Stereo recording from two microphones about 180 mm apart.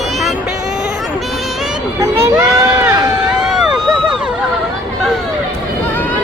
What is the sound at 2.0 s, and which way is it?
Speech, 15° right (ahead or behind).